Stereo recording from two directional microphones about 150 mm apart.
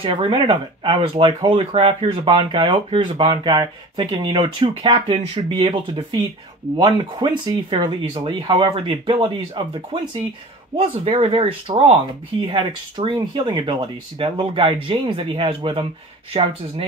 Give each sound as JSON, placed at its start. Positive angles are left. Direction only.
{"t": 0.0, "sound": "speech", "side_deg": -35}
{"t": 10.8, "sound": "speech", "side_deg": -40}